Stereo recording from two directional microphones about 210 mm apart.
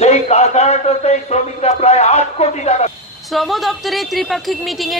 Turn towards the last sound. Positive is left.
turn(degrees=0)  # may be behind; listen again after turning